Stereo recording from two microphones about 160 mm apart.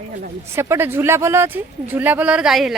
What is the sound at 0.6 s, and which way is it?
Speech, 15° right (ahead or behind).